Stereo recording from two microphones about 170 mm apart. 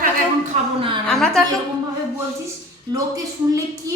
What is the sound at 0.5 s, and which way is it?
Speech, 40° right (ahead or behind).